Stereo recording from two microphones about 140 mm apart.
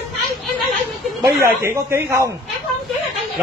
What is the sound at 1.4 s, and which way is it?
Speech, 20° right (ahead or behind).